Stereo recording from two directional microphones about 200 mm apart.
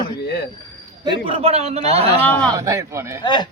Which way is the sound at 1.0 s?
25° right (ahead or behind).